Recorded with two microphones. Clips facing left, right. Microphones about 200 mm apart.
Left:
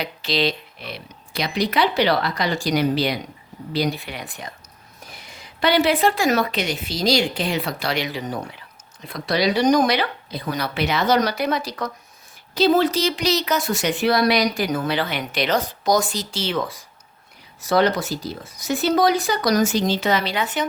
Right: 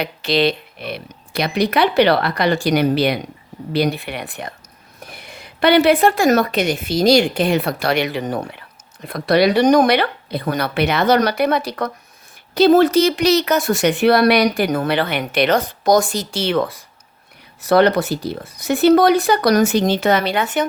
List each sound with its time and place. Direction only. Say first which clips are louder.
0.0 s speech: right 5 dB; 60° right (ahead or behind)